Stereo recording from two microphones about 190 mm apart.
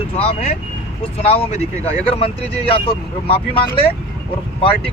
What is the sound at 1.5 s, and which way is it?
Speech, 30° left (ahead or behind).